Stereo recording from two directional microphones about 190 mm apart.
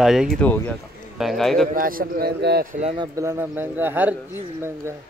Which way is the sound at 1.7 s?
50° right (ahead or behind).